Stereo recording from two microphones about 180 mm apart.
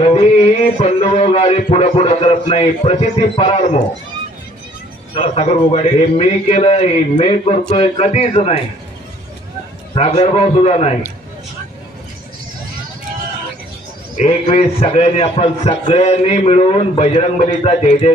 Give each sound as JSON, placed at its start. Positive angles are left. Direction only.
{"t": 0.0, "sound": "music", "side_deg": 35}
{"t": 0.7, "sound": "a man's voice", "side_deg": 35}
{"t": 5.3, "sound": "a man's voice", "side_deg": 35}
{"t": 9.9, "sound": "a man's voice", "side_deg": 35}
{"t": 14.1, "sound": "a man's voice", "side_deg": 35}